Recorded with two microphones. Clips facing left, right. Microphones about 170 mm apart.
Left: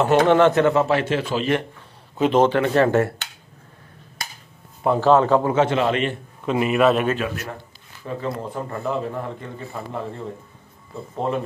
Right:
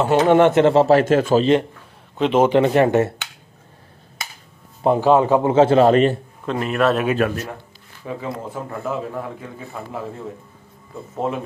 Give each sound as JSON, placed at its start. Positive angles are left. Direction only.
{"t": 0.0, "sound": "speech", "side_deg": -10}
{"t": 0.5, "sound": "speech", "side_deg": -25}
{"t": 2.1, "sound": "a man's voice", "side_deg": 0}
{"t": 2.4, "sound": "speech", "side_deg": -20}
{"t": 4.8, "sound": "speech", "side_deg": -15}
{"t": 5.5, "sound": "speech", "side_deg": -30}
{"t": 6.4, "sound": "a man's voice", "side_deg": 5}
{"t": 8.2, "sound": "a man's voice", "side_deg": -5}